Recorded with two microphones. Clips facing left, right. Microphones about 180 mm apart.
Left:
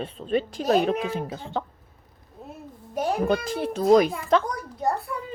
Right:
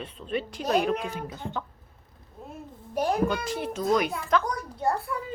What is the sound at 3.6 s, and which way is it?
Speech, 35° left (ahead or behind).